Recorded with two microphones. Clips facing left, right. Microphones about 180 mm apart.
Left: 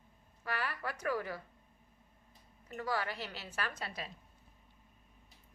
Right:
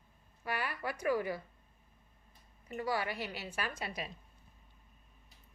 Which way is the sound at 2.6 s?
10° right (ahead or behind).